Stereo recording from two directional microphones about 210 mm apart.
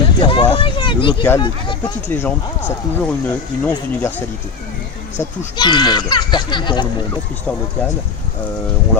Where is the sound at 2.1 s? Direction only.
10° left (ahead or behind).